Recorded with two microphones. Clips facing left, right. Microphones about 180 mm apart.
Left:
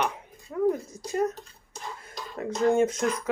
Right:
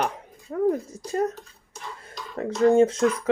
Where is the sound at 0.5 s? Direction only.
40° right (ahead or behind).